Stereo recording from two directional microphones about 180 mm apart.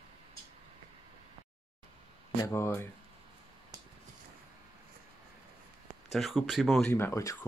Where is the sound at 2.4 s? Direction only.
15° left (ahead or behind).